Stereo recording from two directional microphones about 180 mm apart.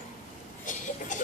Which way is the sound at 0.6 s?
45° left (ahead or behind).